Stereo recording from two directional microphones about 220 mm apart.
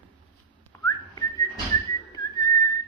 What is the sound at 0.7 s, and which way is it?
Whistling, 15° left (ahead or behind).